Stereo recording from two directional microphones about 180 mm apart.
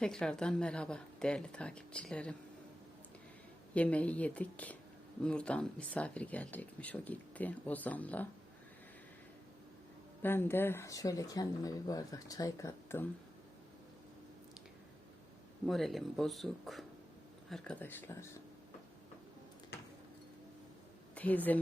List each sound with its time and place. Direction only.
0.0 s a woman's voice: 5° left (ahead or behind)
3.8 s speech: 5° left (ahead or behind)
10.2 s speech: 10° left (ahead or behind)
15.6 s a woman's voice: centre (ahead or behind)
21.2 s speech: 10° left (ahead or behind)